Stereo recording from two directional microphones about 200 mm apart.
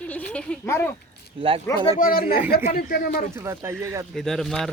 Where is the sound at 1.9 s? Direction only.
45° left (ahead or behind).